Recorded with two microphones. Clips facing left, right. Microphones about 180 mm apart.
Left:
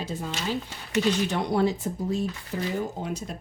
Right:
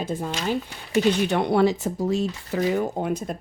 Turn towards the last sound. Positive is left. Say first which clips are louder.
# right 6 dB
turn(degrees=-50)  # may be behind; listen again after turning